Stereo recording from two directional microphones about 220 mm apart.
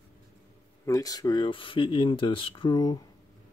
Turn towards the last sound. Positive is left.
turn(degrees=15)  # may be behind; listen again after turning